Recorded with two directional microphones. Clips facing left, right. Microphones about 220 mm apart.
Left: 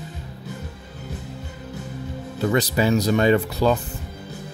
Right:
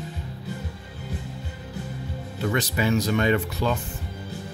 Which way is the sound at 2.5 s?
35° left (ahead or behind).